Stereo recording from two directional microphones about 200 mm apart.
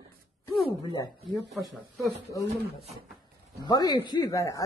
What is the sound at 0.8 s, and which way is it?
Speech, 20° left (ahead or behind).